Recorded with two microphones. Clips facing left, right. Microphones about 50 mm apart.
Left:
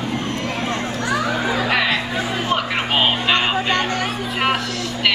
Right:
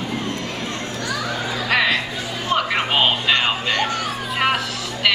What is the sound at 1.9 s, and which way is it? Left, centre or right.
Music, left.